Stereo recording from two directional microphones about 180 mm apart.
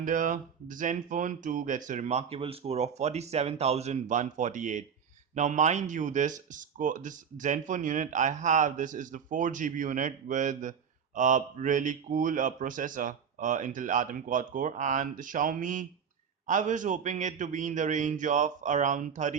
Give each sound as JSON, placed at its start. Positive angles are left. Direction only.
{"t": 0.0, "sound": "speech", "side_deg": -45}